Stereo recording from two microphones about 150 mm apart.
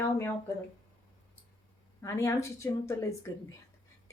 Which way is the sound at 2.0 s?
20° left (ahead or behind).